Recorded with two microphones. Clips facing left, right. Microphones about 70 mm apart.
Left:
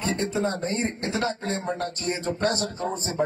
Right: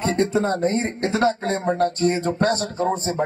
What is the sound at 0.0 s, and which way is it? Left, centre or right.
A man's voice, right.